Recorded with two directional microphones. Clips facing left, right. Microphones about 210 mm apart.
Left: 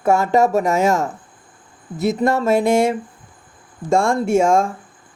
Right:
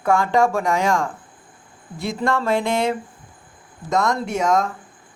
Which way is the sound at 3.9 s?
30° left (ahead or behind).